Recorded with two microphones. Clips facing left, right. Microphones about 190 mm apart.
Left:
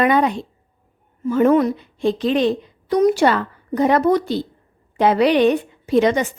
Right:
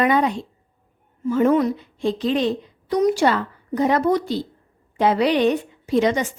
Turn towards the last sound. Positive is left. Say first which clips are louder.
# left 3 dB
turn(degrees=60)  # may be behind; listen again after turning